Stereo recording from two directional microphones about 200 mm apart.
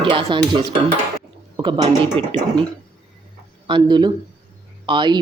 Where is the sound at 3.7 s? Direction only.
20° right (ahead or behind).